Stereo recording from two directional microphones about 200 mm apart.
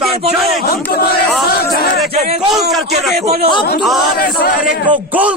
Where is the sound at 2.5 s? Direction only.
Centre (ahead or behind).